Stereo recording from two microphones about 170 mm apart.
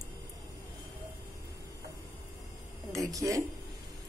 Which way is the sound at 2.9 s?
20° right (ahead or behind).